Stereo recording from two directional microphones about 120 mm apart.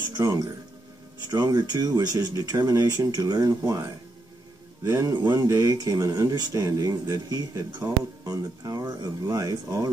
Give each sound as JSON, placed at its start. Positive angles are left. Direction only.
{"t": 0.1, "sound": "speech", "side_deg": -30}